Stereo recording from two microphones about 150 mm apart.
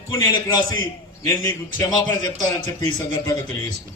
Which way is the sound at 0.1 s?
20° left (ahead or behind).